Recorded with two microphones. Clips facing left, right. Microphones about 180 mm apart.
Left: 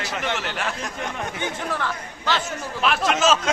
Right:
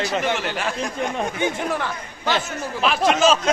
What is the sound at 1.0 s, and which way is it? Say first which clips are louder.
Speech: right 5 dB; 15° right (ahead or behind).